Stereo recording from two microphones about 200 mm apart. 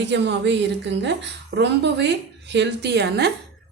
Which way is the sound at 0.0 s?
60° right (ahead or behind).